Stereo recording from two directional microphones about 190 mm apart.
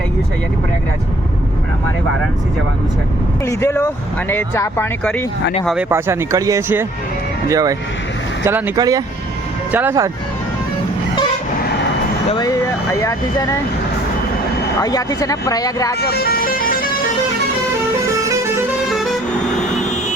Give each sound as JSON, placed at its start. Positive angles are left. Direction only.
{"t": 3.4, "sound": "speech", "side_deg": 15}
{"t": 5.9, "sound": "speech", "side_deg": -15}
{"t": 14.8, "sound": "speech", "side_deg": 20}
{"t": 16.0, "sound": "vehicle", "side_deg": 55}
{"t": 19.7, "sound": "vehicle", "side_deg": 35}